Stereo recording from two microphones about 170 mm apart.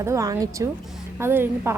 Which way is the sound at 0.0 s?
20° right (ahead or behind).